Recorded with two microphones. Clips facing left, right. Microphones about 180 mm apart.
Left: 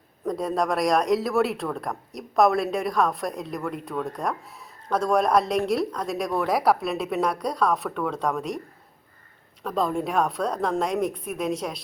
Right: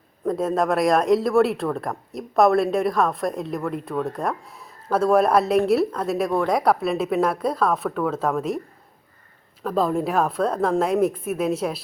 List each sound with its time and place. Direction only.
0.3 s speech: centre (ahead or behind)
9.6 s speech: centre (ahead or behind)